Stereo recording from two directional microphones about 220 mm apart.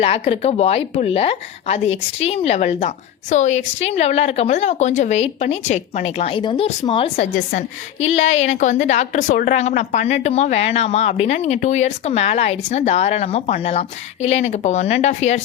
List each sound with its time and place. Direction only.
0.0 s a woman's voice: 25° left (ahead or behind)